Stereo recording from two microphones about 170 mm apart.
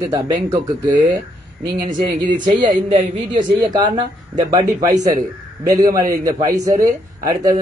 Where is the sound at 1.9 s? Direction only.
50° right (ahead or behind).